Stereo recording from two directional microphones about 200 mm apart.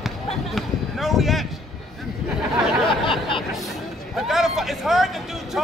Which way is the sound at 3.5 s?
Centre (ahead or behind).